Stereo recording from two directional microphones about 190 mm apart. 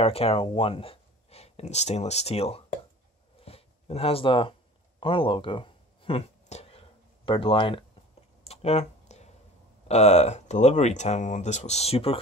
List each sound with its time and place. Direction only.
0.0 s speech: 30° left (ahead or behind)
3.4 s a sound: 30° left (ahead or behind)
8.5 s clicking: 35° left (ahead or behind)
9.8 s speech: 35° left (ahead or behind)